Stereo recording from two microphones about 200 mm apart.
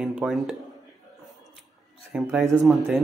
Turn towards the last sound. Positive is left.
turn(degrees=0)  # may be behind; listen again after turning